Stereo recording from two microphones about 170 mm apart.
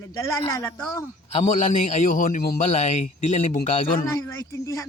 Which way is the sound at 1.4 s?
45° left (ahead or behind).